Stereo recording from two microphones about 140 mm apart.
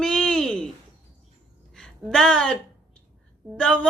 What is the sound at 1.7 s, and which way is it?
A woman's voice, 5° left (ahead or behind).